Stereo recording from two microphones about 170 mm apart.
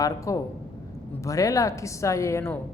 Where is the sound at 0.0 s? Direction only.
20° left (ahead or behind).